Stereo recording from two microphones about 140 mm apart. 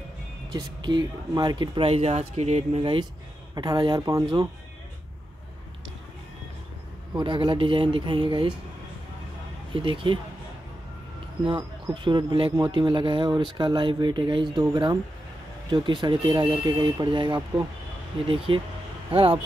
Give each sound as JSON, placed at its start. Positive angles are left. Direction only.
{"t": 0.5, "sound": "speech", "side_deg": -30}
{"t": 2.8, "sound": "speech", "side_deg": -35}
{"t": 7.2, "sound": "speech", "side_deg": -35}
{"t": 9.8, "sound": "speech", "side_deg": -35}
{"t": 11.4, "sound": "speech", "side_deg": -35}